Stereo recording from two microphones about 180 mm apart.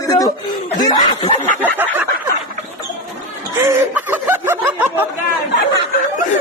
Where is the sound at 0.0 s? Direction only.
20° left (ahead or behind).